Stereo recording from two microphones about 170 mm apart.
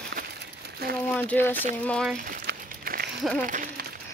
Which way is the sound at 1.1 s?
10° left (ahead or behind).